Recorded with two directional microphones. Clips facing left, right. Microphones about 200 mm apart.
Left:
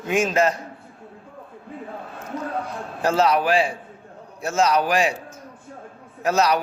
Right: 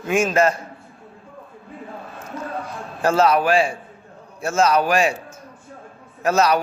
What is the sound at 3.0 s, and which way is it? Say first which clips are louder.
Speech: right 2 dB; 15° left (ahead or behind).